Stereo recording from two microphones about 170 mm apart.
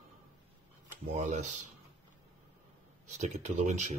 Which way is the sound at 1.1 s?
45° right (ahead or behind).